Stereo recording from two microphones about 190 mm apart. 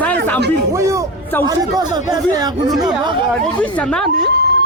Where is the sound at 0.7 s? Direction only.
15° right (ahead or behind).